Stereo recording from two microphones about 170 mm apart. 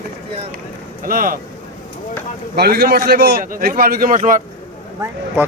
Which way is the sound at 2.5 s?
65° right (ahead or behind).